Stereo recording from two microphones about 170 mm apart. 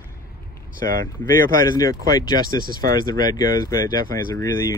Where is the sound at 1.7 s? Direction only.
25° left (ahead or behind).